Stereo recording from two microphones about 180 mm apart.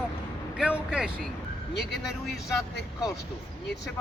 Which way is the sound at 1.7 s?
65° left (ahead or behind).